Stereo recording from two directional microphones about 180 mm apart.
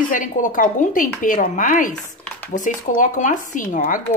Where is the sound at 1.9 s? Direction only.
5° left (ahead or behind).